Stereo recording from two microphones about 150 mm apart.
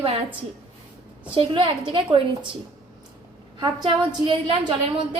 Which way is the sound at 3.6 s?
30° right (ahead or behind).